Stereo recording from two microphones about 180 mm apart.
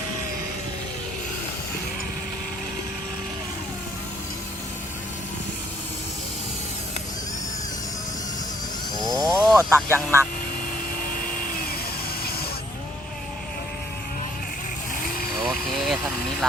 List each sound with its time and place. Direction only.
9.1 s a sound: 20° right (ahead or behind)
9.6 s speech: 15° right (ahead or behind)
15.4 s vehicle: centre (ahead or behind)